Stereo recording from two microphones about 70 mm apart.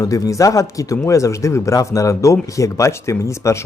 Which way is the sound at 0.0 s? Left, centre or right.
Left.